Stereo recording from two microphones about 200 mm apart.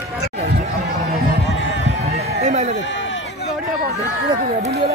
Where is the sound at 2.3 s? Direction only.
35° right (ahead or behind).